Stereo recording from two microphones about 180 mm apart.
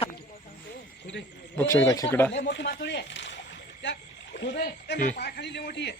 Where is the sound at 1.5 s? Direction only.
15° left (ahead or behind).